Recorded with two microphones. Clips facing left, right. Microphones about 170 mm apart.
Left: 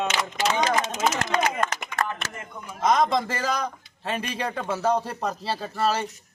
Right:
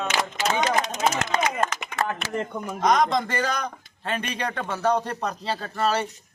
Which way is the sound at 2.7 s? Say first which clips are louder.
Even; 5° left (ahead or behind).